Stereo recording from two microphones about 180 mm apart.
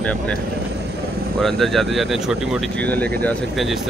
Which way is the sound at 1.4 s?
Centre (ahead or behind).